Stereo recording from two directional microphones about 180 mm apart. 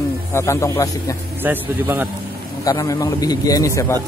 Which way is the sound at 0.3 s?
15° left (ahead or behind).